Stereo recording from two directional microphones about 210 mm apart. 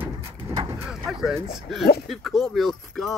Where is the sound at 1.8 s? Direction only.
50° left (ahead or behind).